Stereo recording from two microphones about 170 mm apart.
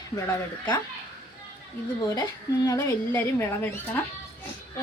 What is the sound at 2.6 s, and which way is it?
Speech, 15° left (ahead or behind).